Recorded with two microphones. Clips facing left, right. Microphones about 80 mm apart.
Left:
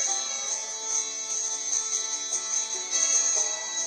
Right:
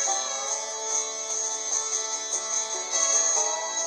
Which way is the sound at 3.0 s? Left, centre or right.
Right.